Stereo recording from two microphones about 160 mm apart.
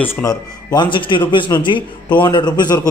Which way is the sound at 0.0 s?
15° left (ahead or behind).